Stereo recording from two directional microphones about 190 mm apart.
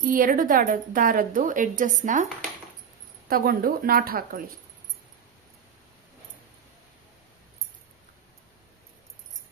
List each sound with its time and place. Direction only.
0.0 s a woman's voice: 45° right (ahead or behind)
3.2 s a woman's voice: 50° right (ahead or behind)